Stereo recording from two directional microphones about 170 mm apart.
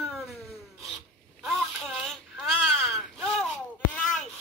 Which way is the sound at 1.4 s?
Centre (ahead or behind).